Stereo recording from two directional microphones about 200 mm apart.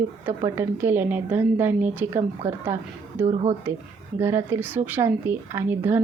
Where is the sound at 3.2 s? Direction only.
35° right (ahead or behind).